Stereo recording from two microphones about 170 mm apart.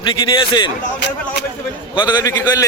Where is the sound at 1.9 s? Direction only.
25° left (ahead or behind).